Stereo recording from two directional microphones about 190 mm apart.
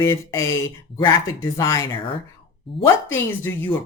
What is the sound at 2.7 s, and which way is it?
Speech, centre (ahead or behind).